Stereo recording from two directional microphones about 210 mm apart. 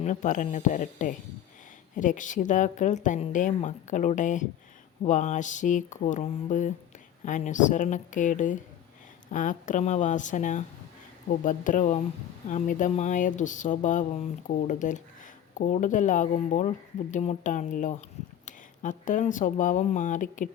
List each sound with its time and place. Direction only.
0.0 s a woman's voice: 35° left (ahead or behind)